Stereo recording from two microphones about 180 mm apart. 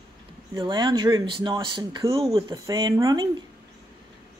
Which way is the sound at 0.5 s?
25° right (ahead or behind).